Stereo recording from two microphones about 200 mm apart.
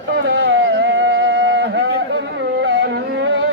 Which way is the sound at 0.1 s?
60° right (ahead or behind).